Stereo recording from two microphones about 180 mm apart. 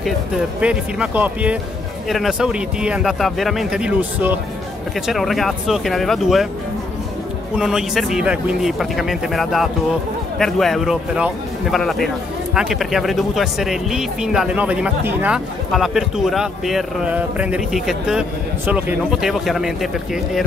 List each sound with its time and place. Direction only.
0.6 s speech: 5° right (ahead or behind)
7.5 s speech: 5° right (ahead or behind)